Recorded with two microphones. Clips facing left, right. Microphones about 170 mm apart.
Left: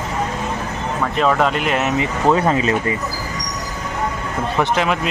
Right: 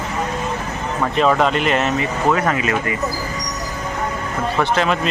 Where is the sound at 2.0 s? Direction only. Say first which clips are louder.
Left 2 dB; 25° left (ahead or behind).